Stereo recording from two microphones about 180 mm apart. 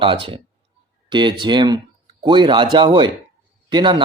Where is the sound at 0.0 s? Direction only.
30° right (ahead or behind).